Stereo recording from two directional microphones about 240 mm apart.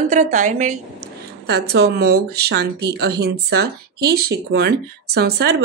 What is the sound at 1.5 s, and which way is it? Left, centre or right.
A woman's voice, right.